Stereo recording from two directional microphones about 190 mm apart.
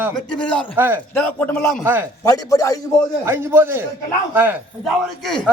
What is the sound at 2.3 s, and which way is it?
Speech, 15° left (ahead or behind).